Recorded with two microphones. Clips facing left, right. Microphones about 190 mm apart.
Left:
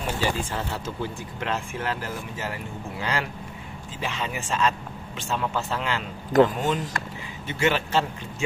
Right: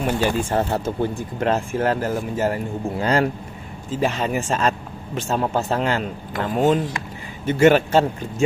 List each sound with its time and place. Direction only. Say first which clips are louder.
0.0 s speech: right 6 dB; 55° right (ahead or behind)